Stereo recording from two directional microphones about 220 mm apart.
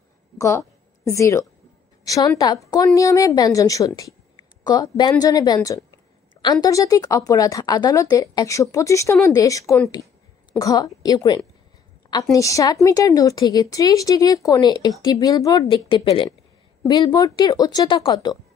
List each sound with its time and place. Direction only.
0.4 s a woman's voice: 15° left (ahead or behind)